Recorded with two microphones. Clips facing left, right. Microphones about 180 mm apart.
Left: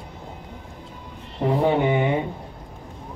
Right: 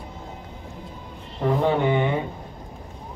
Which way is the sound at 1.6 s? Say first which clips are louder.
Left 2 dB; 15° left (ahead or behind).